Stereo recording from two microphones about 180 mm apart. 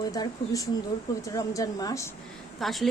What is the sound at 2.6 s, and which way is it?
Speech, centre (ahead or behind).